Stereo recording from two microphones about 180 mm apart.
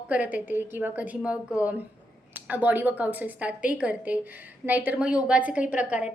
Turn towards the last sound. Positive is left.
turn(degrees=-5)  # may be behind; listen again after turning